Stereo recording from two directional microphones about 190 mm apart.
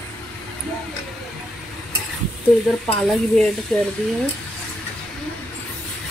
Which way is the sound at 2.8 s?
5° left (ahead or behind).